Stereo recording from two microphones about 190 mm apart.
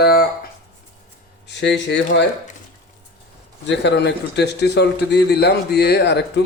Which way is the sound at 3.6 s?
65° left (ahead or behind).